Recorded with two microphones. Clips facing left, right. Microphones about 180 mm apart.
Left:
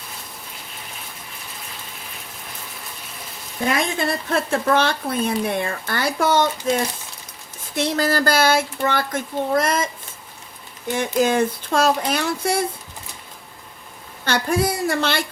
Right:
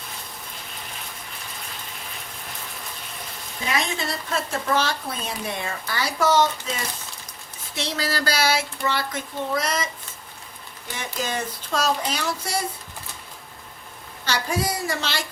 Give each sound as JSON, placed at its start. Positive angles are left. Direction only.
{"t": 3.6, "sound": "speech", "side_deg": 55}
{"t": 7.8, "sound": "speech", "side_deg": 50}
{"t": 10.9, "sound": "speech", "side_deg": 50}
{"t": 14.3, "sound": "speech", "side_deg": 55}